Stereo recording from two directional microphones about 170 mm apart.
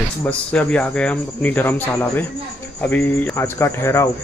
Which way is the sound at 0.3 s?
5° left (ahead or behind).